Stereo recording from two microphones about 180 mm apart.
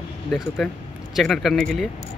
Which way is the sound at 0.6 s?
Centre (ahead or behind).